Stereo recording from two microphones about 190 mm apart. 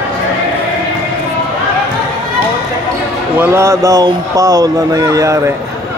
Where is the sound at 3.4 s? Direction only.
15° right (ahead or behind).